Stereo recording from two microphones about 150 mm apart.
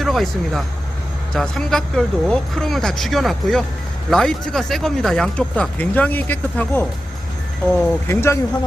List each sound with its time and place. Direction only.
0.0 s speech: centre (ahead or behind); by 8.4 s 15° left (ahead or behind)